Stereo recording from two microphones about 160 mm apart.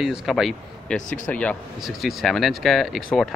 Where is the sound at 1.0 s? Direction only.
55° left (ahead or behind).